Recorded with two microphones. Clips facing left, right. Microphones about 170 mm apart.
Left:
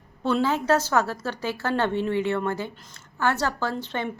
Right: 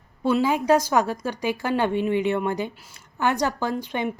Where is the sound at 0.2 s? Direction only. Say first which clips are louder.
Right 2 dB; 10° right (ahead or behind).